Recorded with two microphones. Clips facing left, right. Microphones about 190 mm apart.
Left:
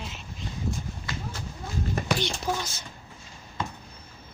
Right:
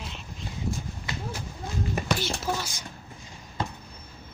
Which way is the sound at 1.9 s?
5° right (ahead or behind).